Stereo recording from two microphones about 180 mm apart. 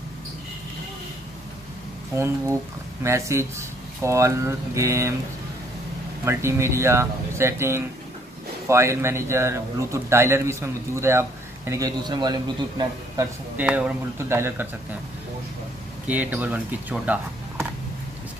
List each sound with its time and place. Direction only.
2.1 s a man's voice: 15° right (ahead or behind)
6.2 s a man's voice: 15° right (ahead or behind)
13.7 s a man's voice: 5° right (ahead or behind)
16.1 s a man's voice: 10° right (ahead or behind)